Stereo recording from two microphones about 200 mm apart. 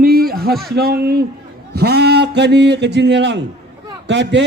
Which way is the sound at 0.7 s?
50° right (ahead or behind).